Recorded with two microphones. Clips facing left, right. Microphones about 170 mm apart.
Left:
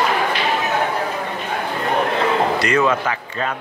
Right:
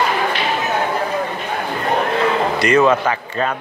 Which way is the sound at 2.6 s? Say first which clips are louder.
Right 4 dB; 25° right (ahead or behind).